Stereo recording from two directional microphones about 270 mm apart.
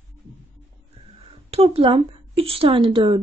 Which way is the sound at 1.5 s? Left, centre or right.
Right.